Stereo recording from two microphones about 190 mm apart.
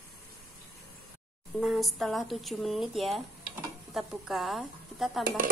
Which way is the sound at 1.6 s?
Centre (ahead or behind).